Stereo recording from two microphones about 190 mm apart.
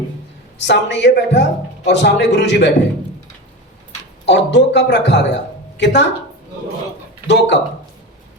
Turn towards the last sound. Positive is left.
turn(degrees=65)  # may be behind; listen again after turning